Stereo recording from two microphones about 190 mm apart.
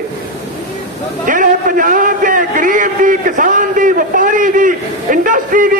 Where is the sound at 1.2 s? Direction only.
45° right (ahead or behind).